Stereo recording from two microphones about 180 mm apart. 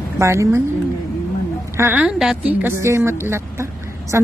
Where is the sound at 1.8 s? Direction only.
10° right (ahead or behind).